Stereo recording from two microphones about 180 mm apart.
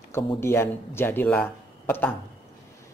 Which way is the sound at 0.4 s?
15° left (ahead or behind).